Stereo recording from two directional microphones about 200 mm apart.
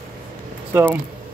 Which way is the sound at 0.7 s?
10° right (ahead or behind).